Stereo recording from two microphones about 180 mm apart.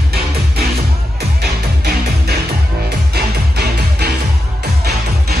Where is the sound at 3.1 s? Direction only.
60° right (ahead or behind).